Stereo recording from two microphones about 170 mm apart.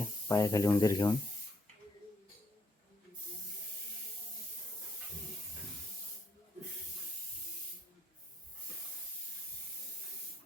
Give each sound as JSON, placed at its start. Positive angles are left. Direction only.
{"t": 0.0, "sound": "speech", "side_deg": 20}